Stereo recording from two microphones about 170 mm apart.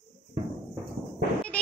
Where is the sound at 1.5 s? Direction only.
10° left (ahead or behind).